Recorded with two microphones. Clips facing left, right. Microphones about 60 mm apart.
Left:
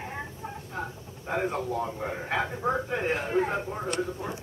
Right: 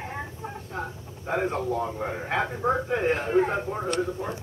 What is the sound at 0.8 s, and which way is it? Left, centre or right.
A man's voice, centre.